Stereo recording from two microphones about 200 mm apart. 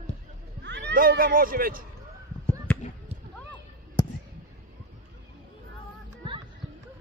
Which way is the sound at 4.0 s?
20° left (ahead or behind).